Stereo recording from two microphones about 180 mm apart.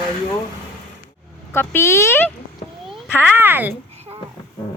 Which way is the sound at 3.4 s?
10° right (ahead or behind).